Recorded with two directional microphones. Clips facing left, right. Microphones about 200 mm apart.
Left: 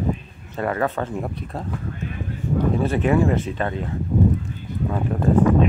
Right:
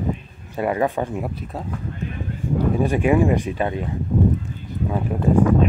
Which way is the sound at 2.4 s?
15° right (ahead or behind).